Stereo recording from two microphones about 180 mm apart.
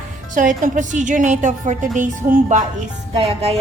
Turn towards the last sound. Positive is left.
turn(degrees=-35)  # may be behind; listen again after turning